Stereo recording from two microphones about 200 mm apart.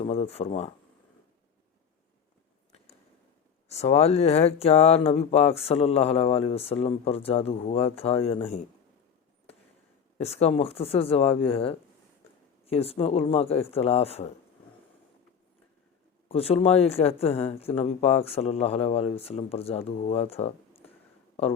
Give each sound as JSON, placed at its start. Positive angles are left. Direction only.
{"t": 0.0, "sound": "speech", "side_deg": 30}
{"t": 3.7, "sound": "speech", "side_deg": 30}
{"t": 10.2, "sound": "speech", "side_deg": 30}
{"t": 16.3, "sound": "speech", "side_deg": 30}